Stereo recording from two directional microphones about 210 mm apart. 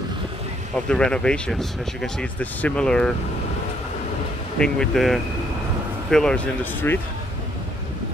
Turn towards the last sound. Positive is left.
turn(degrees=10)  # may be behind; listen again after turning